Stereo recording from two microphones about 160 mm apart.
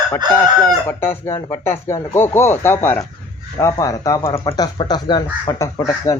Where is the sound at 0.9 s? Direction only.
15° left (ahead or behind).